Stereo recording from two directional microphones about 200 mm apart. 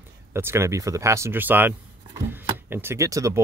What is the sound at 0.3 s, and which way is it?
Speech, 10° right (ahead or behind).